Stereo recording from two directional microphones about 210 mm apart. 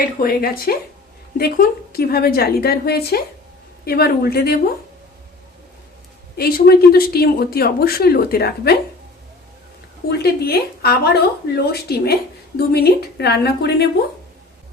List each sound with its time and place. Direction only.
0.0 s speech: 45° left (ahead or behind)
6.3 s speech: 45° left (ahead or behind)
10.1 s speech: 50° left (ahead or behind)